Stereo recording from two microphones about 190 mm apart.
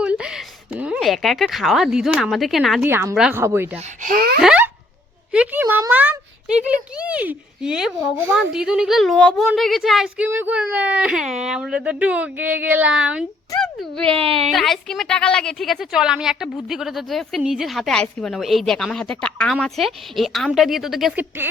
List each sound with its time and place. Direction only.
0.0 s a woman's voice: 5° right (ahead or behind)
2.8 s a woman's voice: 15° right (ahead or behind)
3.2 s a woman's voice: 5° right (ahead or behind)
3.8 s speech: 40° right (ahead or behind)
4.4 s a sound: 5° right (ahead or behind)
5.3 s a woman's voice: 10° right (ahead or behind)
14.2 s a woman's voice: 30° right (ahead or behind)
14.5 s a woman's voice: centre (ahead or behind)